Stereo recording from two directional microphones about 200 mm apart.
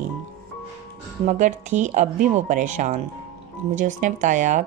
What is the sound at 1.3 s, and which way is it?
Speech, 40° right (ahead or behind).